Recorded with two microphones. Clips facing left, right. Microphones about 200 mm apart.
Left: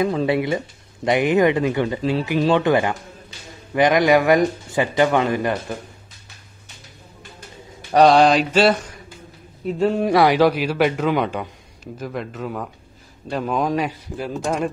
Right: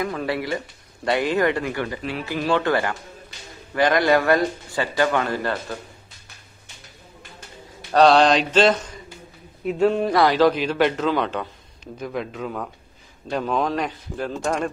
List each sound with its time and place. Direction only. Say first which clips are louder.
0.0 s a man's voice: left 6 dB; 25° left (ahead or behind)
7.9 s a man's voice: left 2 dB; 10° left (ahead or behind)
10.1 s a man's voice: left 2 dB; 15° left (ahead or behind)